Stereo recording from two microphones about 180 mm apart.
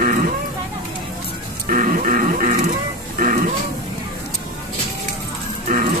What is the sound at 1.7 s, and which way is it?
Wild animals, 50° right (ahead or behind).